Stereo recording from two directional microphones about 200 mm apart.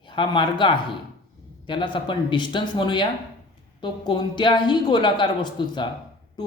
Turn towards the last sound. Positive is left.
turn(degrees=25)  # may be behind; listen again after turning